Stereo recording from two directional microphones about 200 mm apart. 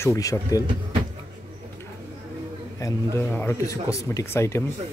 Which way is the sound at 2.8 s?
15° left (ahead or behind).